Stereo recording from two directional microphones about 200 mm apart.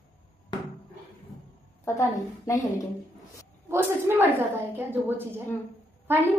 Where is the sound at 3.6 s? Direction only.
10° right (ahead or behind).